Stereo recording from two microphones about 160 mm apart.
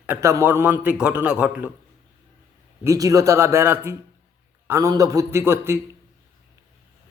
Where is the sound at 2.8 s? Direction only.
20° right (ahead or behind).